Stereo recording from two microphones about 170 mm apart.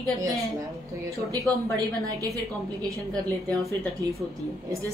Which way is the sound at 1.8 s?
20° right (ahead or behind).